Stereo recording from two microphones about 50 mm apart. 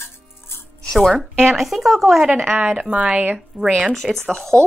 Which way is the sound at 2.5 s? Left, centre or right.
Right.